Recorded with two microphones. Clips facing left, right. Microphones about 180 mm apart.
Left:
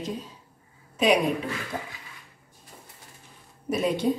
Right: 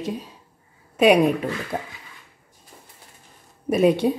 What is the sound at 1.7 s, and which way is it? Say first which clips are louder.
Speech: right 5 dB; 60° right (ahead or behind).